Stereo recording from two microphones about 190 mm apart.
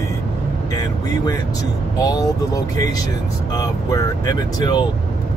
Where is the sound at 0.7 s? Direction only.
20° left (ahead or behind).